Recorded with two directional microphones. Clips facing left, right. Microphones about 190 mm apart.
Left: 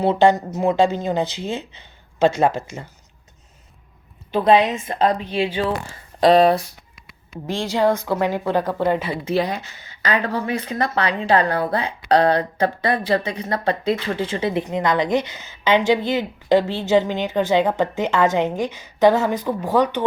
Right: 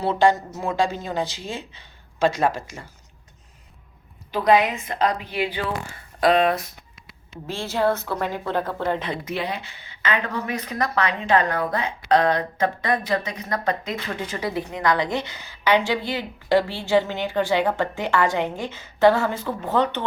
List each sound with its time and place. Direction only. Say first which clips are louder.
0.0 s speech: left 4 dB; 20° left (ahead or behind)
4.3 s speech: left 3 dB; 25° left (ahead or behind)
7.4 s a woman's voice: left 3 dB; 15° left (ahead or behind)
9.2 s speech: left 6 dB; 40° left (ahead or behind); by 20.1 s 10° left (ahead or behind)